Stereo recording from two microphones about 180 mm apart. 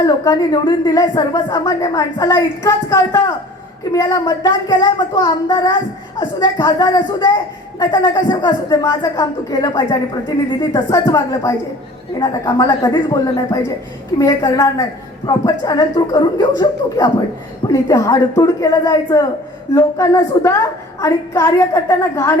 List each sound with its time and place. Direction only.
0.0 s a woman's voice: 25° left (ahead or behind)